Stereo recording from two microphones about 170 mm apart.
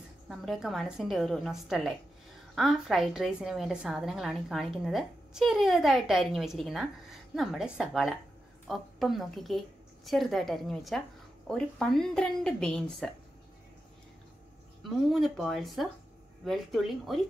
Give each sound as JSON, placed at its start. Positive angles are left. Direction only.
{"t": 0.3, "sound": "a woman's voice", "side_deg": 0}
{"t": 14.8, "sound": "a woman's voice", "side_deg": 0}